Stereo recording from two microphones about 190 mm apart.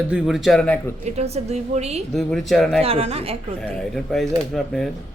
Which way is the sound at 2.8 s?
30° right (ahead or behind).